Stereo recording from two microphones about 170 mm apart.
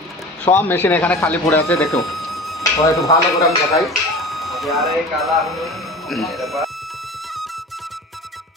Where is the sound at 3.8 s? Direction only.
Centre (ahead or behind).